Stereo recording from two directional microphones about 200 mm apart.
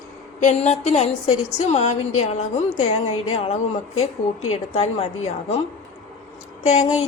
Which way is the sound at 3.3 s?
30° left (ahead or behind).